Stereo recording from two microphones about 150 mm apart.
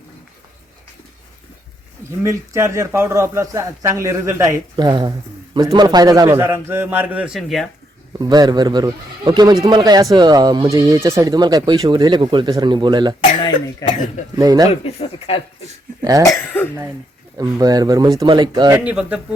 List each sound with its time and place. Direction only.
2.2 s a man's voice: 20° right (ahead or behind); by 7.7 s centre (ahead or behind)
8.2 s speech: 25° right (ahead or behind)
13.4 s speech: 30° left (ahead or behind)
14.3 s speech: 25° right (ahead or behind)
14.7 s speech: 45° left (ahead or behind)
16.0 s cough: 25° right (ahead or behind)
16.5 s speech: 15° left (ahead or behind)
17.3 s speech: 25° right (ahead or behind)
18.8 s a man's voice: 10° right (ahead or behind)